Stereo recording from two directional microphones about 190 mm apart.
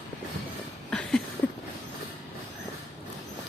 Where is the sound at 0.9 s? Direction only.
5° left (ahead or behind).